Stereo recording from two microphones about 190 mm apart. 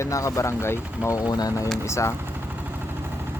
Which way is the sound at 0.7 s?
5° right (ahead or behind).